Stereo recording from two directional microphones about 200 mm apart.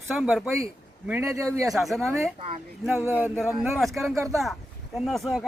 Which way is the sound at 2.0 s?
15° right (ahead or behind).